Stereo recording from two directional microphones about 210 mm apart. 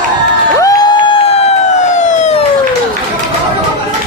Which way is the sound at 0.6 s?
15° left (ahead or behind).